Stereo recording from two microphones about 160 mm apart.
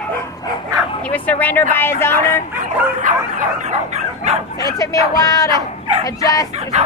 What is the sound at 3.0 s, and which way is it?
Speech, 50° right (ahead or behind).